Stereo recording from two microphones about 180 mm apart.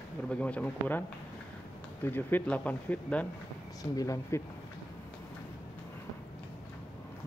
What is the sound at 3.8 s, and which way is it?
Speech, 20° left (ahead or behind).